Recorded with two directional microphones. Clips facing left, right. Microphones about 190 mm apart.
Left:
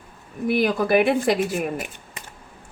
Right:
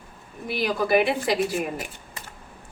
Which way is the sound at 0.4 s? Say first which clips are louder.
Left 5 dB; 55° left (ahead or behind).